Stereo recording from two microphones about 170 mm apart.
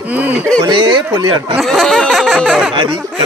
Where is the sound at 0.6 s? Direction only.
30° right (ahead or behind).